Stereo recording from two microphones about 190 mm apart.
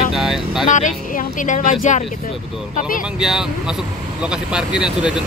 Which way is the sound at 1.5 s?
40° left (ahead or behind).